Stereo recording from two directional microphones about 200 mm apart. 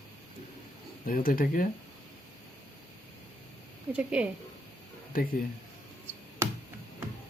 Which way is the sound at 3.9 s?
5° right (ahead or behind).